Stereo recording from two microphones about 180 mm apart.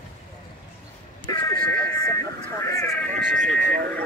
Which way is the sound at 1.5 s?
55° right (ahead or behind).